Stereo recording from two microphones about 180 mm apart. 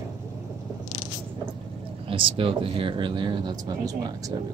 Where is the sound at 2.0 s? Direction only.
30° right (ahead or behind).